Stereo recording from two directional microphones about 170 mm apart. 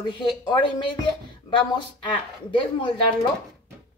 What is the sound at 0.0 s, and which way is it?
Speech, 30° left (ahead or behind).